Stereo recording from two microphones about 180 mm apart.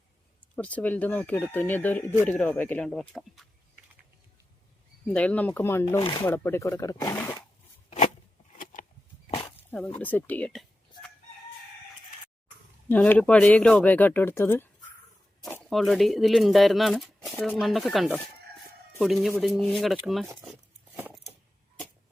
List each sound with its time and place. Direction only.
0.5 s speech: 5° left (ahead or behind)
5.1 s speech: 5° left (ahead or behind)
7.9 s a sound: 35° left (ahead or behind)
8.7 s a sound: 50° left (ahead or behind)
10.0 s speech: 10° left (ahead or behind)
12.9 s speech: 10° left (ahead or behind)
20.9 s keys jangling: 10° right (ahead or behind)